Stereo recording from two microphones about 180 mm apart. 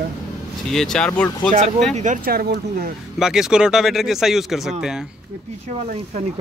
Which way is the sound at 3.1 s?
5° right (ahead or behind).